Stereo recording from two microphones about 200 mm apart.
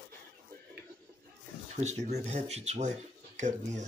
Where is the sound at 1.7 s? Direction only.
35° right (ahead or behind).